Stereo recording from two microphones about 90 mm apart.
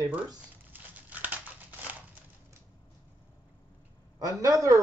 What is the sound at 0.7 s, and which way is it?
Crumpling, 20° right (ahead or behind).